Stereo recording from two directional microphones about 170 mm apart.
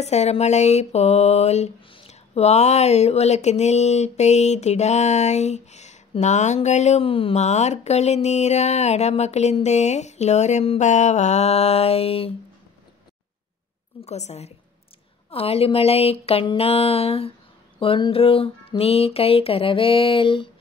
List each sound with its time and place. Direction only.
0.0 s mantra: 40° left (ahead or behind)
14.0 s mantra: 40° left (ahead or behind)